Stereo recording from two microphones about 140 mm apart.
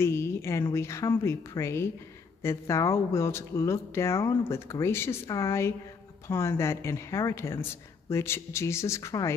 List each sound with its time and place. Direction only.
0.0 s speech: 20° left (ahead or behind)